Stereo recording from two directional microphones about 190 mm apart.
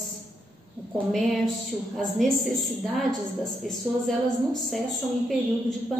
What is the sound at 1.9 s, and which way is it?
Speech, centre (ahead or behind).